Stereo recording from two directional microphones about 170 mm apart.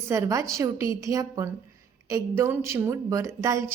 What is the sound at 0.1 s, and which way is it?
A woman's voice, 15° right (ahead or behind).